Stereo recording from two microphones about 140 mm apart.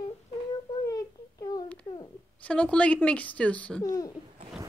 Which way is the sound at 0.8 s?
25° left (ahead or behind).